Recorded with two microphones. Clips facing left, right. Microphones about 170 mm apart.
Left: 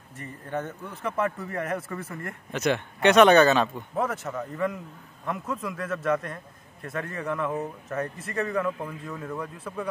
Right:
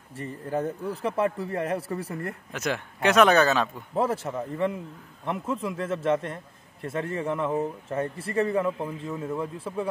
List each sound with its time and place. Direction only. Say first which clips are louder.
0.1 s speech: right 3 dB; 30° right (ahead or behind)
2.5 s speech: left 6 dB; 5° right (ahead or behind)
3.9 s a man's voice: right 2 dB; 30° right (ahead or behind)